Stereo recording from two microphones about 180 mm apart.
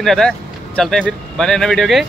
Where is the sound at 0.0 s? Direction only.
Centre (ahead or behind).